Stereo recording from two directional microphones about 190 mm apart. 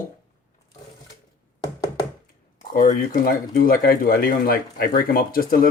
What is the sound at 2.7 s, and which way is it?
Speech, 45° left (ahead or behind).